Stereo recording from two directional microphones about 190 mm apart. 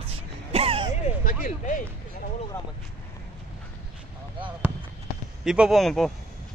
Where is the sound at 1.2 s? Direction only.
45° left (ahead or behind).